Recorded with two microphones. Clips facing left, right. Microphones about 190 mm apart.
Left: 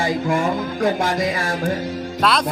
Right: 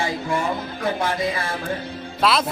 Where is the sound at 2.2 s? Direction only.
5° right (ahead or behind).